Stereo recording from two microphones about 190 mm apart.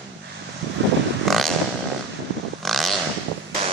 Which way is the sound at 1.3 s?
Centre (ahead or behind).